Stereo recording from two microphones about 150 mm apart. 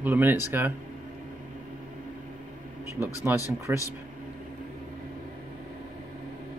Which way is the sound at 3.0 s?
15° right (ahead or behind).